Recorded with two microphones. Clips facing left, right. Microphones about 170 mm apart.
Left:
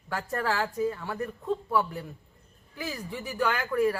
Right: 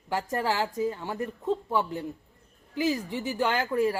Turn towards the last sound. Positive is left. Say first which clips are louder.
# right 1 dB
turn(degrees=-25)  # may be behind; listen again after turning